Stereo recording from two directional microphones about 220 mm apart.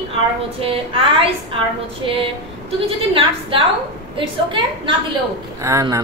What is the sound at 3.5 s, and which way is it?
A woman's voice, 25° right (ahead or behind).